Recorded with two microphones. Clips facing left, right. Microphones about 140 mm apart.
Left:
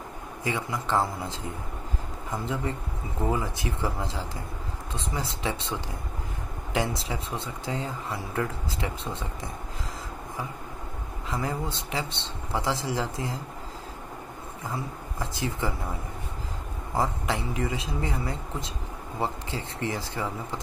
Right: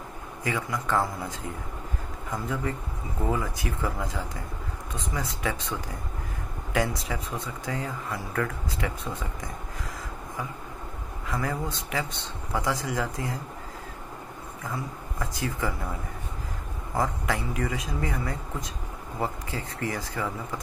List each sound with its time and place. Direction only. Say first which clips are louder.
0.4 s speech: even; 25° left (ahead or behind)
2.3 s speech: even; 25° left (ahead or behind)
11.2 s speech: even; 25° left (ahead or behind)
14.6 s speech: even; 25° left (ahead or behind)
16.9 s speech: even; 25° left (ahead or behind)